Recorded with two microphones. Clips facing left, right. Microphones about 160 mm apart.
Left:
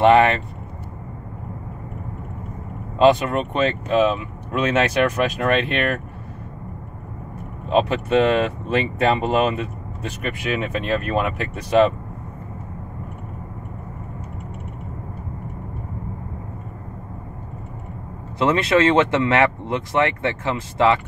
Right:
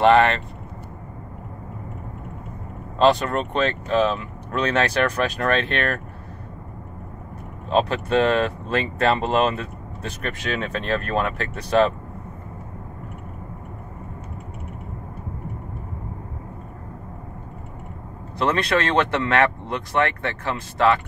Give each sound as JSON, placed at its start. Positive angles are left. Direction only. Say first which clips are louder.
{"t": 0.0, "sound": "speech", "louder": "left 2 dB", "side_deg": 15}
{"t": 3.0, "sound": "speech", "louder": "left 3 dB", "side_deg": 15}
{"t": 7.7, "sound": "speech", "louder": "left 2 dB", "side_deg": 15}
{"t": 18.4, "sound": "speech", "louder": "left 4 dB", "side_deg": 20}